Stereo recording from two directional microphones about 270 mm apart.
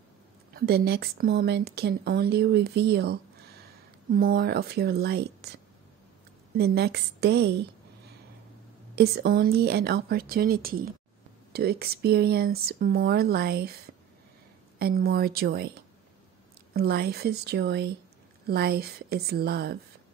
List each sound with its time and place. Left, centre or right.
0.6 s speech: right
6.5 s speech: right
8.9 s speech: right
14.8 s speech: right
16.7 s speech: right